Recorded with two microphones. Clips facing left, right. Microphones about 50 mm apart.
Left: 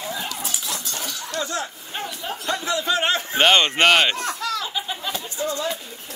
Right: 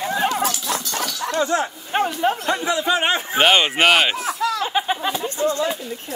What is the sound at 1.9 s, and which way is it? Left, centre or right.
Speech, right.